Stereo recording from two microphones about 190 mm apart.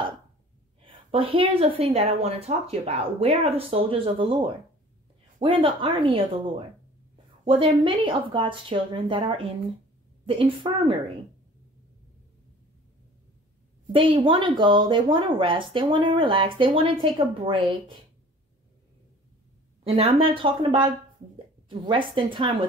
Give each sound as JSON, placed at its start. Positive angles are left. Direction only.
{"t": 0.8, "sound": "a woman's voice", "side_deg": -30}
{"t": 7.4, "sound": "speech", "side_deg": -25}
{"t": 13.9, "sound": "speech", "side_deg": -30}
{"t": 19.9, "sound": "speech", "side_deg": -30}